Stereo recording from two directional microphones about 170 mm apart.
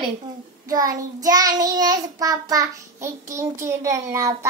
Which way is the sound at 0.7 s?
20° right (ahead or behind).